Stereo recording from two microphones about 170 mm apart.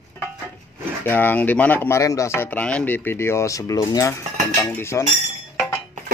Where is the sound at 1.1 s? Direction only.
10° left (ahead or behind).